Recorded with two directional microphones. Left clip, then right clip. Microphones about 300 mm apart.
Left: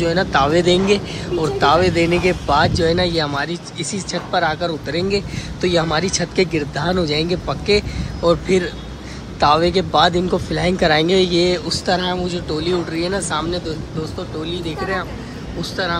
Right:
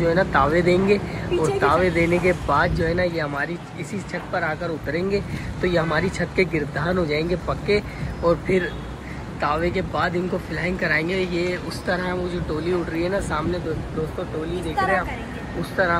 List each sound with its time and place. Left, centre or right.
0.0 s speech: centre
15.6 s speech: centre